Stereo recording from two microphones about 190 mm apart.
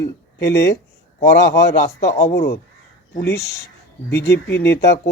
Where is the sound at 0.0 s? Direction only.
60° left (ahead or behind).